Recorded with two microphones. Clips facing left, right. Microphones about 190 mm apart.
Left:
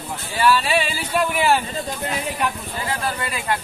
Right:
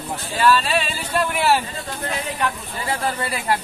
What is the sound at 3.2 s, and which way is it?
Speech, 35° right (ahead or behind).